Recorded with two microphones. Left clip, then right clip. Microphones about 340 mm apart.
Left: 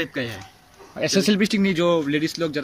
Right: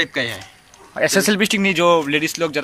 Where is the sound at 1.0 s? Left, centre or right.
Centre.